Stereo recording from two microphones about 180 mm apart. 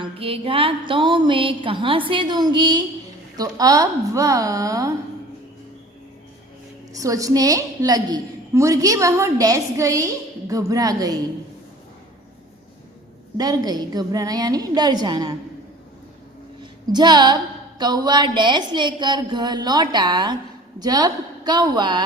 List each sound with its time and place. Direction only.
0.0 s a woman's voice: 30° right (ahead or behind)
6.9 s a woman's voice: 20° right (ahead or behind)
13.3 s a woman's voice: 20° right (ahead or behind)
16.9 s a woman's voice: 25° right (ahead or behind)